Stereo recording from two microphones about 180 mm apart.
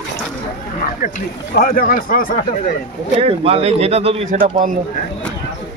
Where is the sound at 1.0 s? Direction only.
55° left (ahead or behind).